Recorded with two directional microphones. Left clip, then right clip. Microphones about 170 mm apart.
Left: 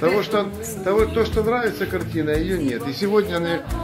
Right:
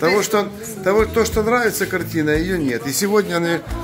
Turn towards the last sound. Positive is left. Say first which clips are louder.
# right 2 dB
turn(degrees=-20)  # may be behind; listen again after turning